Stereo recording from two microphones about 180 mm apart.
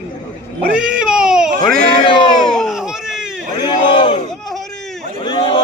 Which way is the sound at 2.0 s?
25° left (ahead or behind).